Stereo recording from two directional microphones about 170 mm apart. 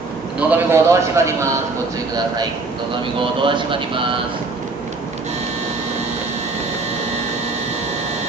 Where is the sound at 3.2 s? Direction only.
30° right (ahead or behind).